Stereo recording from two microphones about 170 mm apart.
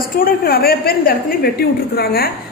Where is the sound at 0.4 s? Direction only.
65° left (ahead or behind).